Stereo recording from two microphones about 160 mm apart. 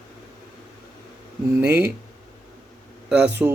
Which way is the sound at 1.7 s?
90° right.